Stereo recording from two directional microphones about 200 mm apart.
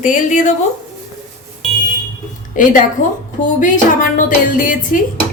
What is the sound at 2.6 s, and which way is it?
A woman's voice, 40° left (ahead or behind).